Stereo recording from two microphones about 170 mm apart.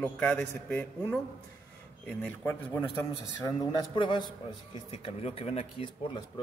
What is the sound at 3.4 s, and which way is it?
A man's voice, 30° left (ahead or behind).